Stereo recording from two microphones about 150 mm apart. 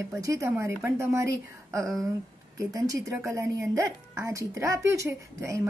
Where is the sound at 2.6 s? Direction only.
25° right (ahead or behind).